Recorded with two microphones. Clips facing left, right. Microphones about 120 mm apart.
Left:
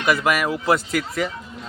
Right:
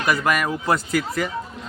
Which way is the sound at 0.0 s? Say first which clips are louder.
Left 1 dB; 5° left (ahead or behind).